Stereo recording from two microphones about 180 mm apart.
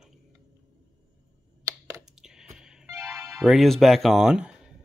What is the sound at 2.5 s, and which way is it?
Music, 5° right (ahead or behind).